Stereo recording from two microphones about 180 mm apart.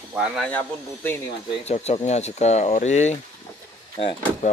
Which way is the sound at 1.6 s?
35° left (ahead or behind).